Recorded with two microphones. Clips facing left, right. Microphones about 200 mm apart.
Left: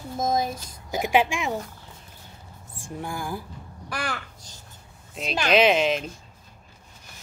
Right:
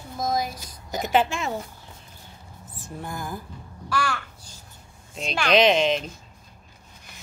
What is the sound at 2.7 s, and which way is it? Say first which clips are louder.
Speech: left 2 dB; 10° left (ahead or behind).